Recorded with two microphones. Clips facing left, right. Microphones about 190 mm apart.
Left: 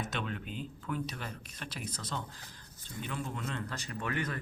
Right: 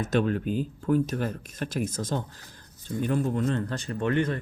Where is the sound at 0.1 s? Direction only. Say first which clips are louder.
Right 14 dB; 45° right (ahead or behind).